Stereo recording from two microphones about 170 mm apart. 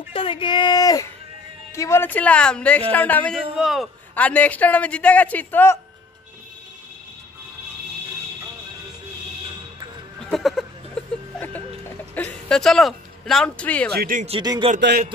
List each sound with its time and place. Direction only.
0.1 s a man's voice: 30° left (ahead or behind); by 5.8 s 10° left (ahead or behind)
10.2 s a sound: centre (ahead or behind)
11.3 s vehicle: 10° left (ahead or behind)
12.2 s speech: 5° left (ahead or behind)
13.9 s speech: 55° right (ahead or behind)
14.2 s speech: 30° right (ahead or behind)
14.8 s a man's voice: 75° right (ahead or behind)